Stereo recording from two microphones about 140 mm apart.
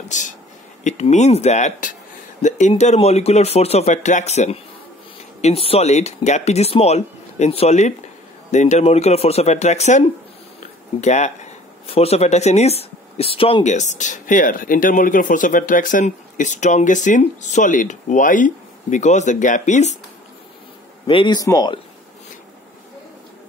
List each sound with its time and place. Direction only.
0.1 s a sound: 60° left (ahead or behind)
0.8 s speech: 55° left (ahead or behind); by 13.7 s 40° left (ahead or behind)
13.7 s speech: 60° left (ahead or behind)
21.1 s speech: 35° left (ahead or behind)